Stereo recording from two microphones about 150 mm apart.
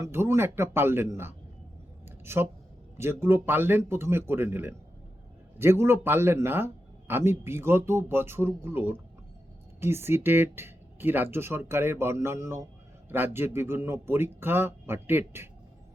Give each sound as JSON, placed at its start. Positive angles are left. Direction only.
{"t": 0.0, "sound": "speech", "side_deg": -15}
{"t": 2.0, "sound": "a sound", "side_deg": -15}
{"t": 3.0, "sound": "speech", "side_deg": -15}